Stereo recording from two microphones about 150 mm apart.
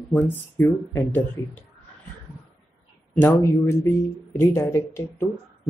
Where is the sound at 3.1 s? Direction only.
15° left (ahead or behind).